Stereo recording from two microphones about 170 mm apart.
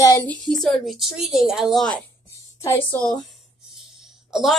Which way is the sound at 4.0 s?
Centre (ahead or behind).